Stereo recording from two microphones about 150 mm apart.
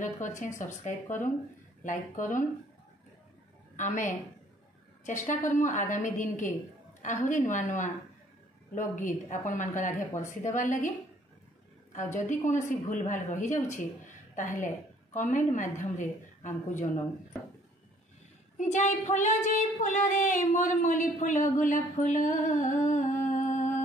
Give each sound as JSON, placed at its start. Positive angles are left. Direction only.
{"t": 0.0, "sound": "speech", "side_deg": 55}
{"t": 3.7, "sound": "speech", "side_deg": 55}
{"t": 12.6, "sound": "a woman's voice", "side_deg": 55}
{"t": 18.6, "sound": "speech", "side_deg": 55}